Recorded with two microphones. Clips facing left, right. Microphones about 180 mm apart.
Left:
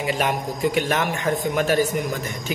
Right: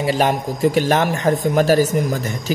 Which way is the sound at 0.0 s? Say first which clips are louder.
Right 5 dB; 35° right (ahead or behind).